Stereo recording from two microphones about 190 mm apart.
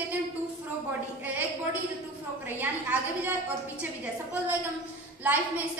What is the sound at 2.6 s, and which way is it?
Speech, 10° right (ahead or behind).